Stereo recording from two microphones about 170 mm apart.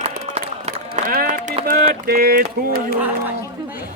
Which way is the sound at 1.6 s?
60° right (ahead or behind).